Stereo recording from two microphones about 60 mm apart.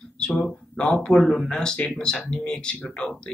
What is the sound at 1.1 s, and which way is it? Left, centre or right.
Speech, centre.